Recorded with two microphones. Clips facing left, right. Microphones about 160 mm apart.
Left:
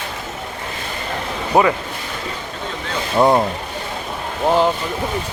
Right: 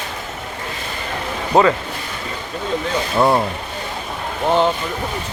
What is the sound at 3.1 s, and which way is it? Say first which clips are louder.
Speech: left 2 dB; 20° left (ahead or behind).